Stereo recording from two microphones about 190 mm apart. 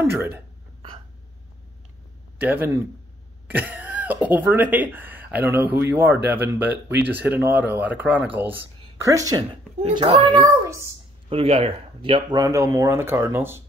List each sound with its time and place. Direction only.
0.0 s speech: 10° right (ahead or behind)
2.4 s speech: 10° right (ahead or behind)
9.8 s speech: 30° right (ahead or behind); by 13.6 s 10° right (ahead or behind)